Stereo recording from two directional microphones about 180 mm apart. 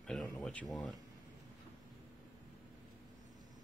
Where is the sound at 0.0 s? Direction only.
5° left (ahead or behind).